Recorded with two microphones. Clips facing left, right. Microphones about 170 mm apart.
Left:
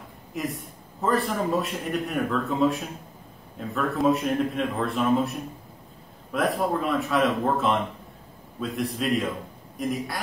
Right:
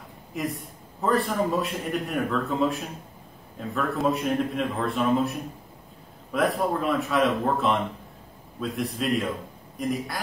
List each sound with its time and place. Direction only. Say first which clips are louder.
0.3 s a man's voice: right 1 dB; centre (ahead or behind)